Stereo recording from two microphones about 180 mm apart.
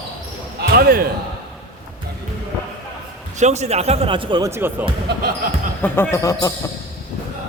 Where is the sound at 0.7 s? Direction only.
60° right (ahead or behind).